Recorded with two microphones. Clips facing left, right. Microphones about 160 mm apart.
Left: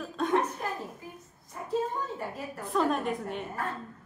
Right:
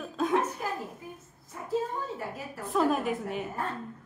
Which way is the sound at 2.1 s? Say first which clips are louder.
Left 1 dB; centre (ahead or behind).